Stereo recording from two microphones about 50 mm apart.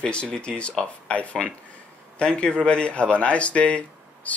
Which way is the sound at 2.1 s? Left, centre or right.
Centre.